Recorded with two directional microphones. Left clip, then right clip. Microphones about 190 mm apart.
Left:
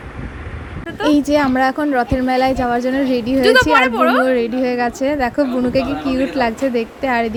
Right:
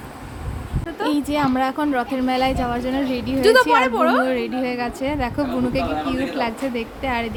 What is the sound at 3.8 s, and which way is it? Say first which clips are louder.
Speech: left 4 dB; 10° right (ahead or behind).